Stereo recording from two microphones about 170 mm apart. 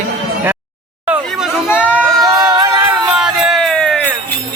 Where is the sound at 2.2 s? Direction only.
15° right (ahead or behind).